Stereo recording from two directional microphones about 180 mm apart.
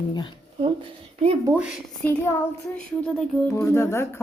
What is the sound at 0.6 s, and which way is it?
Speech, 30° right (ahead or behind).